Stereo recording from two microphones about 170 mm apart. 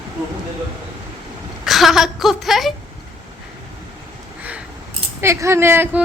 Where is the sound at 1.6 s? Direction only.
Centre (ahead or behind).